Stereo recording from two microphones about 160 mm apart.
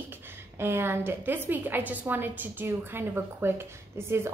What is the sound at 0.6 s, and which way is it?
A woman's voice, 15° right (ahead or behind).